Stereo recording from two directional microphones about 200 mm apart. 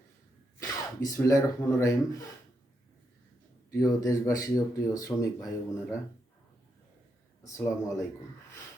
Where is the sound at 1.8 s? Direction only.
15° left (ahead or behind).